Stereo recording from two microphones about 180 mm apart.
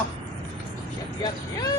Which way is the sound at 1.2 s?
20° left (ahead or behind).